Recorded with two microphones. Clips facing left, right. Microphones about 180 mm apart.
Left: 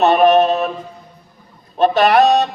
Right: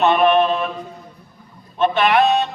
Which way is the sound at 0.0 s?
40° left (ahead or behind).